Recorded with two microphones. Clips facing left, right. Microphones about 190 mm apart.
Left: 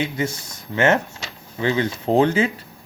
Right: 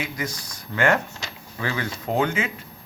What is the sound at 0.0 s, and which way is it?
Speech, 25° left (ahead or behind).